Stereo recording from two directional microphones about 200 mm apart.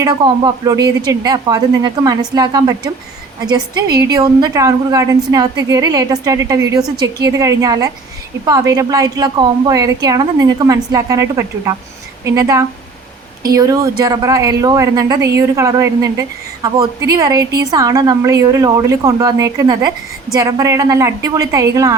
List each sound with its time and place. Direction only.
0.0 s a woman's voice: 20° right (ahead or behind)
4.0 s a woman's voice: 20° right (ahead or behind)